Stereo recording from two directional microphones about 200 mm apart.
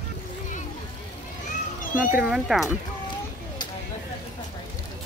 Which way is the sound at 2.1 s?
5° right (ahead or behind).